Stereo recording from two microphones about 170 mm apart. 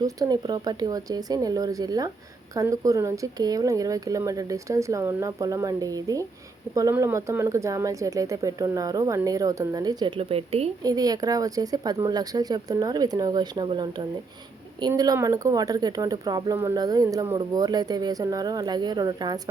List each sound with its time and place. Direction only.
0.0 s speech: 20° right (ahead or behind)
10.8 s speech: 20° right (ahead or behind)